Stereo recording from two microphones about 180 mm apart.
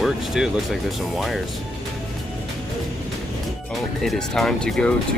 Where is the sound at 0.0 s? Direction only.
Centre (ahead or behind).